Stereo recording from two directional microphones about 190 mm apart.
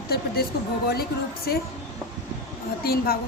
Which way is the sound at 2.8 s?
55° left (ahead or behind).